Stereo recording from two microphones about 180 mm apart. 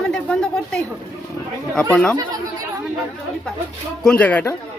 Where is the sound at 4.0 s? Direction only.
5° left (ahead or behind).